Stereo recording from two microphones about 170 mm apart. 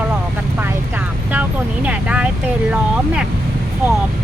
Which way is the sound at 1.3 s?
10° right (ahead or behind).